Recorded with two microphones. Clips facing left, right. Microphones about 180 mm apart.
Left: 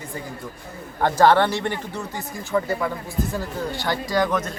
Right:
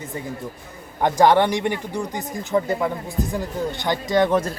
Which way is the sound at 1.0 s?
15° right (ahead or behind).